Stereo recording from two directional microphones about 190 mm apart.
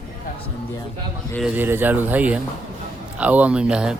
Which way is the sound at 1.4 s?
5° right (ahead or behind).